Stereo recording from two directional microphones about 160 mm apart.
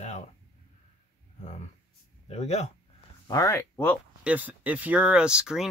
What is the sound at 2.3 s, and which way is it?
Speech, 45° left (ahead or behind).